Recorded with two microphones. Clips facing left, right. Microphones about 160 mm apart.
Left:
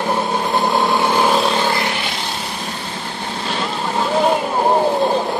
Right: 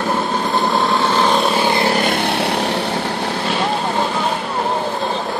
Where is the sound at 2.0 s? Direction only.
60° right (ahead or behind).